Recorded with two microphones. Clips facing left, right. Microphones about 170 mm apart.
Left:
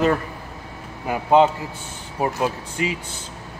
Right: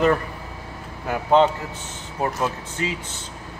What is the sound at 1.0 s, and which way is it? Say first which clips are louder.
Speech: left 1 dB; 10° left (ahead or behind).